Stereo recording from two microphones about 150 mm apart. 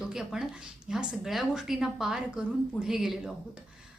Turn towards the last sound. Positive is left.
turn(degrees=0)  # may be behind; listen again after turning